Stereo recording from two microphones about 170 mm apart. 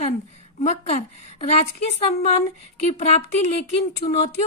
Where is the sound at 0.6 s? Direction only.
40° left (ahead or behind).